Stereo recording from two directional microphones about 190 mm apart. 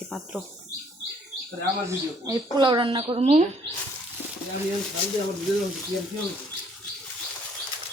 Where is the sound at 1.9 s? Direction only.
20° right (ahead or behind); by 3.4 s 35° right (ahead or behind).